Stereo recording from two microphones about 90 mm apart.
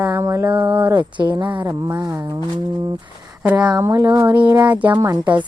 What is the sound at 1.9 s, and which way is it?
Speech, 50° right (ahead or behind).